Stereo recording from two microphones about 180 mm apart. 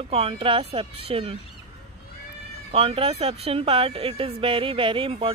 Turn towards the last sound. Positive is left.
turn(degrees=-30)  # may be behind; listen again after turning